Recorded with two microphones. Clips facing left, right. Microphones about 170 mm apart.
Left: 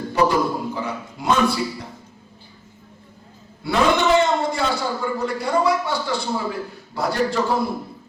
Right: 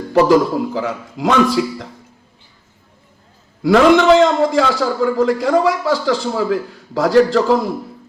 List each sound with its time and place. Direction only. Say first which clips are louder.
0.1 s a man's voice: right 7 dB; 90° right
3.6 s a man's voice: right 8 dB; 90° right